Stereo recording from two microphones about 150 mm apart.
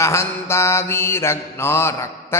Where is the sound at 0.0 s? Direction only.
20° left (ahead or behind).